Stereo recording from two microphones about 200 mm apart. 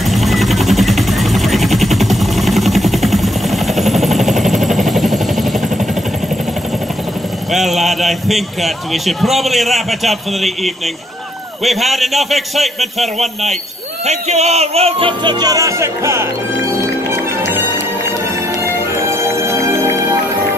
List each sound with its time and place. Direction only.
0.1 s vehicle: centre (ahead or behind)
7.5 s a man's voice: centre (ahead or behind)
14.0 s speech: 35° right (ahead or behind); by 16.3 s 15° right (ahead or behind)
17.1 s music: 10° right (ahead or behind)
18.9 s music: 15° right (ahead or behind)